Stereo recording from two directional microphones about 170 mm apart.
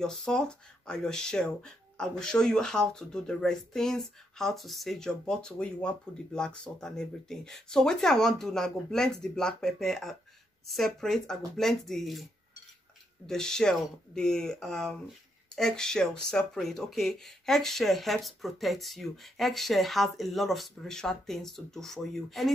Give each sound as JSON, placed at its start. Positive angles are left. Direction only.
{"t": 0.0, "sound": "speech", "side_deg": 5}
{"t": 13.3, "sound": "speech", "side_deg": 5}